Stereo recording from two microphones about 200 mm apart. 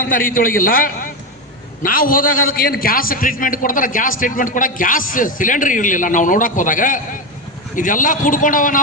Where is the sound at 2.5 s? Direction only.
45° left (ahead or behind).